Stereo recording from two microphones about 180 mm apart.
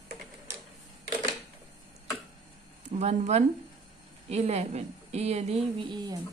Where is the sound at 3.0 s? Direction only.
40° right (ahead or behind).